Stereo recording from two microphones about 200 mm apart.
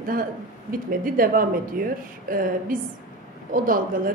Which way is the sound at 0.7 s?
45° right (ahead or behind).